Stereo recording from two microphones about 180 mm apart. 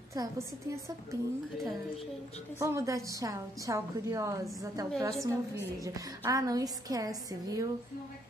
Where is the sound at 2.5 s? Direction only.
15° right (ahead or behind).